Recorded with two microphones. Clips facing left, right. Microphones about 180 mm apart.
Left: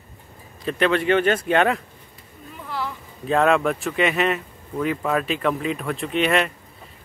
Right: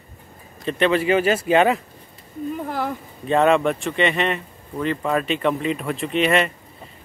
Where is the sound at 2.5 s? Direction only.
50° right (ahead or behind).